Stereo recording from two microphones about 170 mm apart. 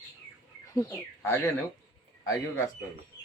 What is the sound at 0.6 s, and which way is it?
Speech, 15° left (ahead or behind).